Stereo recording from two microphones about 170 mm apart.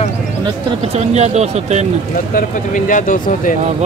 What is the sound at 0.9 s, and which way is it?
Speech, 40° right (ahead or behind).